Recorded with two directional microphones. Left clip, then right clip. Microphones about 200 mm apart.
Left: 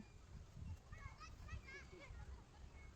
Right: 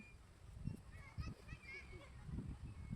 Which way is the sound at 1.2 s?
35° left (ahead or behind).